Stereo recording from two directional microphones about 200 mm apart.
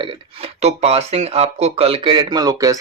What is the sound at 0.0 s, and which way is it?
Speech, 30° right (ahead or behind).